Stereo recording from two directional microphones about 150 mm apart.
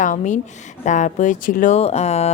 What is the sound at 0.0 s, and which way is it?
Speech, 55° left (ahead or behind).